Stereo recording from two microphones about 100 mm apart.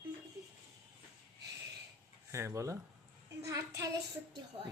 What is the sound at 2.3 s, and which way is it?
Speech, 30° right (ahead or behind).